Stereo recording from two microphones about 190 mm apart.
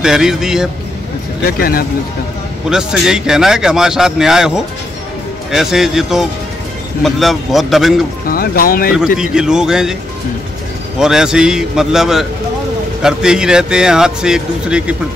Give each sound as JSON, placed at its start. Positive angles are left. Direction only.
{"t": 0.0, "sound": "speech", "side_deg": -5}
{"t": 1.4, "sound": "speech", "side_deg": 50}
{"t": 2.7, "sound": "speech", "side_deg": -5}
{"t": 8.3, "sound": "speech", "side_deg": 50}
{"t": 8.9, "sound": "speech", "side_deg": -5}
{"t": 11.0, "sound": "speech", "side_deg": -5}